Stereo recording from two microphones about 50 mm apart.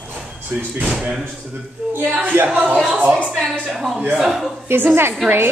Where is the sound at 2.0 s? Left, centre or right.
Right.